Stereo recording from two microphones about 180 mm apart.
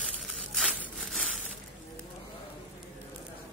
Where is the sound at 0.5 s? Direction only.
Centre (ahead or behind).